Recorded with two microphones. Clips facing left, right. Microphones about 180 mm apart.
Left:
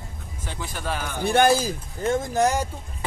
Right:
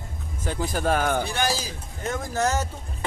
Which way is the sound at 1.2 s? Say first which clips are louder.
Left 8 dB; 55° left (ahead or behind).